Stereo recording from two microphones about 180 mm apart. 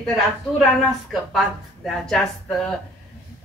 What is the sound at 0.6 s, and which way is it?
Speech, centre (ahead or behind).